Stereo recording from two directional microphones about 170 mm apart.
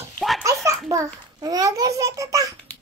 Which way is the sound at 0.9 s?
20° right (ahead or behind).